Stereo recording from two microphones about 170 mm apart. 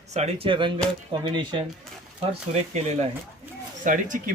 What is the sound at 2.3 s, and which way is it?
Speech, 40° right (ahead or behind).